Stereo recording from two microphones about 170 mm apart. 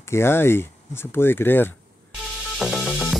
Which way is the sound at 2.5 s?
Centre (ahead or behind).